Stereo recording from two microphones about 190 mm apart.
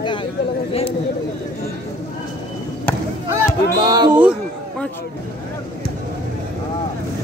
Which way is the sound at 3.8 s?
25° right (ahead or behind).